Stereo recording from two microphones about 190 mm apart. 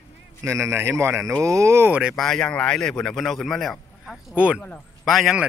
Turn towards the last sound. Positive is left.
turn(degrees=0)  # may be behind; listen again after turning